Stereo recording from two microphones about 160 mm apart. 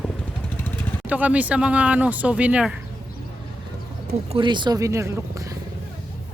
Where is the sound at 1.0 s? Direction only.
10° right (ahead or behind).